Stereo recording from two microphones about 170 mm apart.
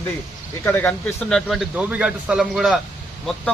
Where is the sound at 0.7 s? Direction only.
10° left (ahead or behind).